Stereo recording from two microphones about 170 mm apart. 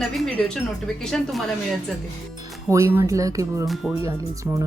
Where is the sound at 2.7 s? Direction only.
20° right (ahead or behind).